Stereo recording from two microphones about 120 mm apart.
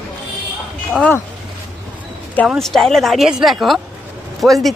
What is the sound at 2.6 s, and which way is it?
Speech, centre (ahead or behind).